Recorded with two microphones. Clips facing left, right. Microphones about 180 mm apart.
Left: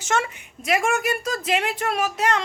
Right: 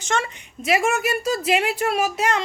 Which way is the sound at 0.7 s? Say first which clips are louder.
Right 1 dB; 5° right (ahead or behind).